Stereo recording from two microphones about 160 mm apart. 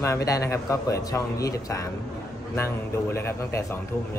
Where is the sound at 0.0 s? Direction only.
20° left (ahead or behind).